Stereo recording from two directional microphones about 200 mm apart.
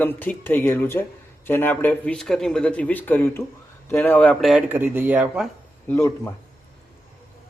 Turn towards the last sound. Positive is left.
turn(degrees=10)  # may be behind; listen again after turning